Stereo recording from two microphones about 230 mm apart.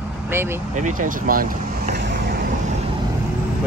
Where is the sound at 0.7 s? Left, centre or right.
Right.